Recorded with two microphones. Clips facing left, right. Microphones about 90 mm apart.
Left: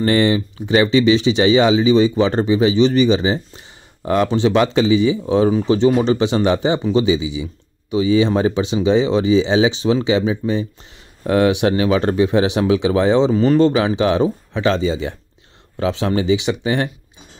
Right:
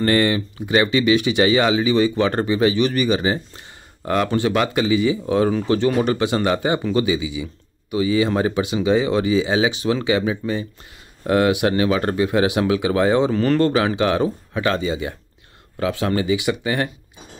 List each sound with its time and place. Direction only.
0.0 s speech: 25° left (ahead or behind)